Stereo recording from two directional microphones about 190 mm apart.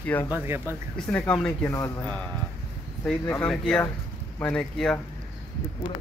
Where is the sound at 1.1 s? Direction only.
5° left (ahead or behind).